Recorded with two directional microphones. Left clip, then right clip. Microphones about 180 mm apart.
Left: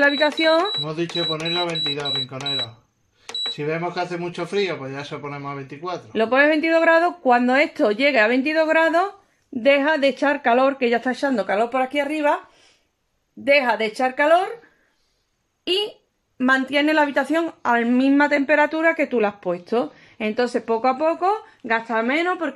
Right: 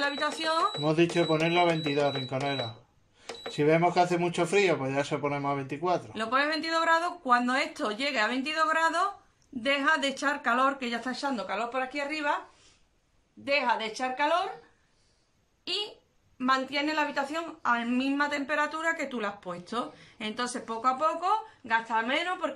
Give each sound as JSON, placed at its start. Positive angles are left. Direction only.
{"t": 0.0, "sound": "speech", "side_deg": 30}
{"t": 0.7, "sound": "speech", "side_deg": -5}
{"t": 6.1, "sound": "speech", "side_deg": 30}
{"t": 13.4, "sound": "speech", "side_deg": 50}
{"t": 16.3, "sound": "speech", "side_deg": 40}
{"t": 20.6, "sound": "speech", "side_deg": 40}